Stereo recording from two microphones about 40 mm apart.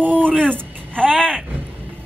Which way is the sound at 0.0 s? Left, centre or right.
Right.